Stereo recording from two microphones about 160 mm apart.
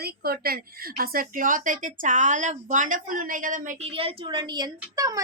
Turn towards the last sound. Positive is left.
turn(degrees=-25)  # may be behind; listen again after turning